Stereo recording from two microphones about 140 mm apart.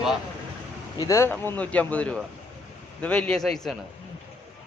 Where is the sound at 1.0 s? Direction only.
20° left (ahead or behind).